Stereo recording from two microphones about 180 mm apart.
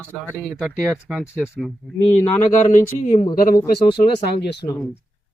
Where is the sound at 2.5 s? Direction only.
45° left (ahead or behind).